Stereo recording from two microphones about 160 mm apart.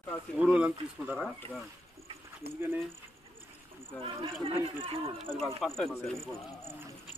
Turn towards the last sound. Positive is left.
turn(degrees=5)  # may be behind; listen again after turning